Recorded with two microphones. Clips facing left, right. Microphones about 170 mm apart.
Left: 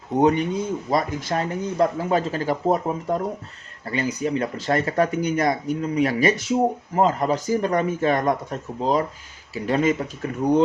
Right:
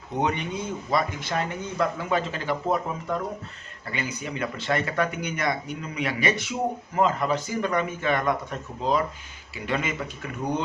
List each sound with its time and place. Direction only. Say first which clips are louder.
0.2 s speech: left 8 dB; 40° left (ahead or behind)